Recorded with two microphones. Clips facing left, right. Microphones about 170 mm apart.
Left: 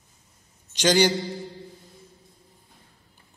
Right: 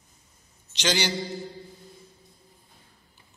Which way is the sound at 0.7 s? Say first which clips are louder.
Left 7 dB; 45° left (ahead or behind).